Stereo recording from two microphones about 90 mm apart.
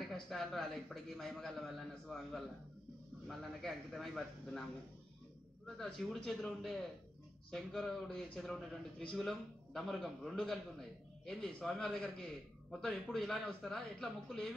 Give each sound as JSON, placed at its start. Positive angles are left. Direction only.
{"t": 0.1, "sound": "a man's voice", "side_deg": 0}
{"t": 5.8, "sound": "a man's voice", "side_deg": 5}